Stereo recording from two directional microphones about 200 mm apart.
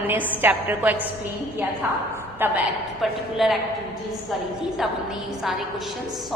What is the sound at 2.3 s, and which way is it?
A woman's voice, 10° right (ahead or behind).